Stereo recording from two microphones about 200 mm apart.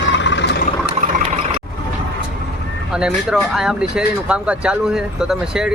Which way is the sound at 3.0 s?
5° right (ahead or behind).